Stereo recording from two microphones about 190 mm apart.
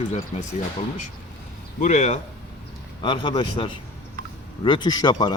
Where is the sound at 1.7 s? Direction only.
40° left (ahead or behind).